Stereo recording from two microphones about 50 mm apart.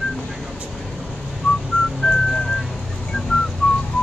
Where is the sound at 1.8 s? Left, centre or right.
Left.